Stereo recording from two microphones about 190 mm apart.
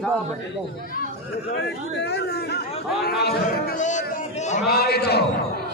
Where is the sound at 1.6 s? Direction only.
60° left (ahead or behind); by 4.6 s 40° left (ahead or behind).